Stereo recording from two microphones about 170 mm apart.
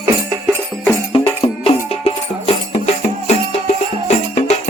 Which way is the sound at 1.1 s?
35° left (ahead or behind).